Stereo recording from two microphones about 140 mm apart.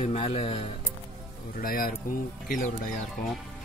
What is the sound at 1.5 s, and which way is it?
Speech, 90° left.